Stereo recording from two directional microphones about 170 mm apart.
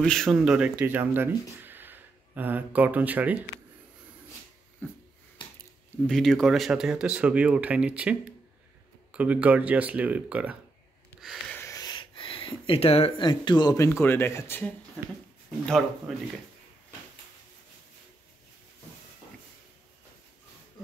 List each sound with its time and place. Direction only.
0.0 s speech: 5° left (ahead or behind)
4.8 s a sound: 10° left (ahead or behind)
6.0 s speech: centre (ahead or behind)
11.1 s snort: centre (ahead or behind)
11.5 s a sound: 20° left (ahead or behind)
13.8 s speech: 15° left (ahead or behind)
16.1 s speech: centre (ahead or behind)